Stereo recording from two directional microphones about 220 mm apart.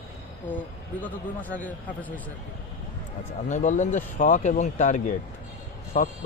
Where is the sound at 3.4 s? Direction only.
35° left (ahead or behind).